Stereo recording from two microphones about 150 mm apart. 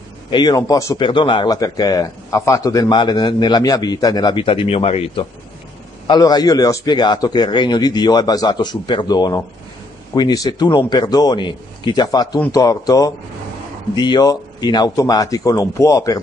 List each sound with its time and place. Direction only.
0.3 s a man's voice: 30° left (ahead or behind)
1.0 s a man's voice: 35° left (ahead or behind)
6.0 s a man's voice: 25° left (ahead or behind)